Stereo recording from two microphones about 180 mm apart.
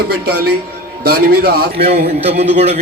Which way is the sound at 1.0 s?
60° right (ahead or behind).